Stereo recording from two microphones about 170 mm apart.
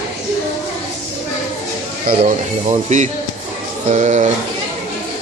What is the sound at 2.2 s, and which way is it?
Speech, 45° right (ahead or behind).